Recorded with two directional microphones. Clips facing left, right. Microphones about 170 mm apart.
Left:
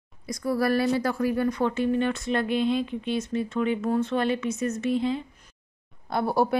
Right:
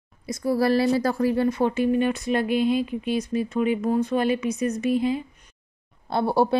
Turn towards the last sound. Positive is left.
turn(degrees=-25)  # may be behind; listen again after turning